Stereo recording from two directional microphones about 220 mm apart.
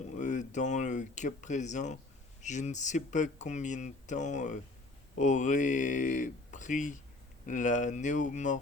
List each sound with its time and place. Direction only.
0.1 s speech: 35° left (ahead or behind)